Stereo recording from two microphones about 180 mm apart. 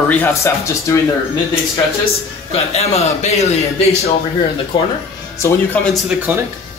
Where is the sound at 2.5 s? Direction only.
35° left (ahead or behind).